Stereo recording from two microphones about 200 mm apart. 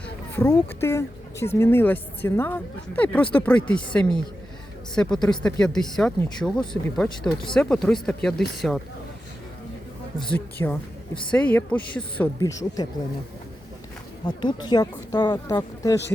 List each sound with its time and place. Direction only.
0.3 s speech: 10° left (ahead or behind)
10.2 s speech: 10° left (ahead or behind)
14.3 s speech: 20° left (ahead or behind)